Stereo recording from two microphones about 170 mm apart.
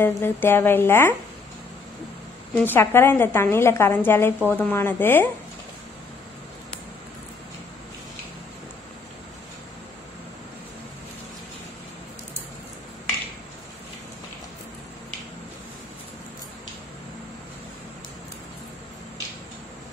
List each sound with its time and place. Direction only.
0.0 s a woman's voice: 15° left (ahead or behind)
2.5 s a woman's voice: 10° left (ahead or behind)